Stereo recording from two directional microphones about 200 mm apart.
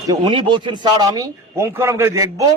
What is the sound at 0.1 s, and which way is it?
A man's voice, 20° right (ahead or behind).